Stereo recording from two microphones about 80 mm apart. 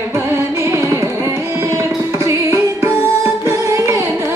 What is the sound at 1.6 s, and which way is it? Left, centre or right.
Music, right.